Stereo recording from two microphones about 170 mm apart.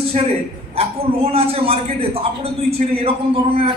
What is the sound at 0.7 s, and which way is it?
A man's voice, 35° right (ahead or behind).